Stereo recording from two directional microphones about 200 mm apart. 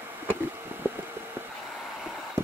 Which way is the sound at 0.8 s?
10° right (ahead or behind).